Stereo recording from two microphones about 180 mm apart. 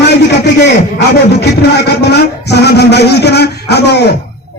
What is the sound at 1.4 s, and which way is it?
Speech, 65° left (ahead or behind).